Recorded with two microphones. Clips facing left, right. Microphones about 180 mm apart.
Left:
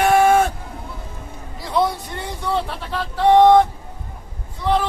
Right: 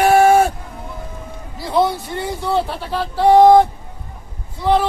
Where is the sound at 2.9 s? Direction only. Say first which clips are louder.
Right 4 dB; 30° right (ahead or behind).